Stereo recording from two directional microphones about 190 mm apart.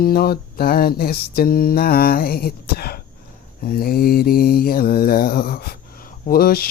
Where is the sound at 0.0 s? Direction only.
55° left (ahead or behind).